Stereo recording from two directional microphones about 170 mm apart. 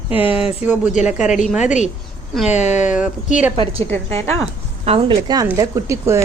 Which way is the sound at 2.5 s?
40° left (ahead or behind).